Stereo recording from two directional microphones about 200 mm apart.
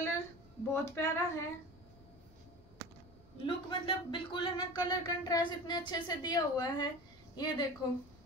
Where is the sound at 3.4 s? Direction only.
25° left (ahead or behind).